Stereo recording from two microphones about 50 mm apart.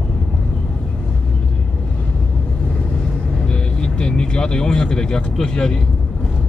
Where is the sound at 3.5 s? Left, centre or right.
Centre.